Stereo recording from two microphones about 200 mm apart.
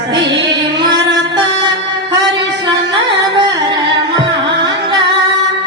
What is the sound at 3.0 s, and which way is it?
Carnatic music, 25° right (ahead or behind).